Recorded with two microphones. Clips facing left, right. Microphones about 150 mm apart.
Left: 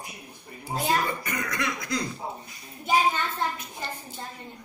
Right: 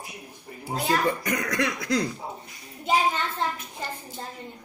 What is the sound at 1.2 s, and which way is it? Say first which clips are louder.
Cough: right 4 dB; 75° right (ahead or behind).